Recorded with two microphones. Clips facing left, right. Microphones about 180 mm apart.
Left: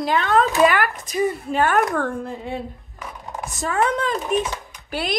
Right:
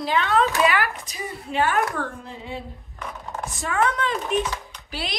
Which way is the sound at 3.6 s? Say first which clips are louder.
Left 2 dB; 40° left (ahead or behind).